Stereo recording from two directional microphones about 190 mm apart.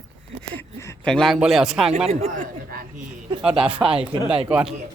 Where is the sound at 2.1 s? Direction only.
40° right (ahead or behind).